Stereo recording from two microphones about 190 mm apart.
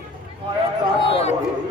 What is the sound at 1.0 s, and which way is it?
Speech, 30° left (ahead or behind).